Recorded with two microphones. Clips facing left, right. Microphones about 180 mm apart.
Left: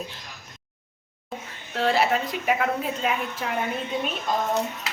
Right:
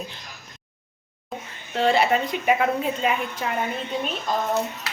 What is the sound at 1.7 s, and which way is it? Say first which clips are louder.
A woman's voice: right 2 dB; centre (ahead or behind).